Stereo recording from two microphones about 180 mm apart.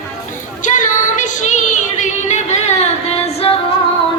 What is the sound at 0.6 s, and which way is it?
Music, 45° left (ahead or behind).